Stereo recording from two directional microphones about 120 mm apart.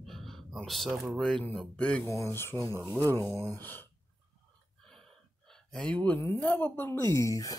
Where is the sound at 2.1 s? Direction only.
20° left (ahead or behind).